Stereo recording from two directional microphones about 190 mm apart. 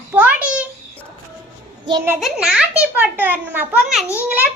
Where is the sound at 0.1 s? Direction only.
5° right (ahead or behind).